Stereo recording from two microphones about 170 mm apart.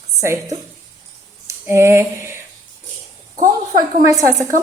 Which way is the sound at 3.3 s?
55° right (ahead or behind).